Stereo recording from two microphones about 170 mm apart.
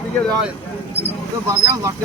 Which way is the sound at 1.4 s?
20° right (ahead or behind).